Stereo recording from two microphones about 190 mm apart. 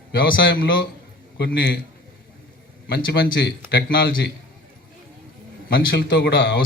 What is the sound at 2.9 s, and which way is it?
A man's voice, 55° left (ahead or behind).